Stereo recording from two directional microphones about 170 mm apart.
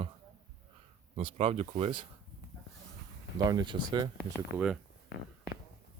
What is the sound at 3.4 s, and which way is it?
Speech, 25° right (ahead or behind).